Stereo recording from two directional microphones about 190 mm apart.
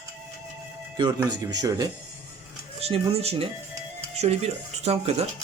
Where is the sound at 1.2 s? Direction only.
20° right (ahead or behind).